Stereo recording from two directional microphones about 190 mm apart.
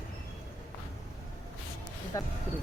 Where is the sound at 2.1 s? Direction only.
15° left (ahead or behind).